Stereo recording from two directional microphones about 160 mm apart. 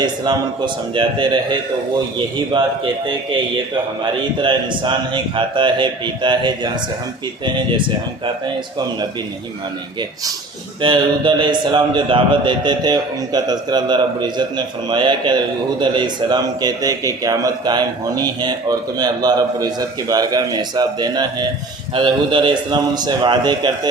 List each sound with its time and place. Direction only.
0.0 s a man's voice: 30° right (ahead or behind)
2.5 s a man's voice: 30° right (ahead or behind)
4.0 s a man's voice: 30° right (ahead or behind)
10.8 s a man's voice: 30° right (ahead or behind)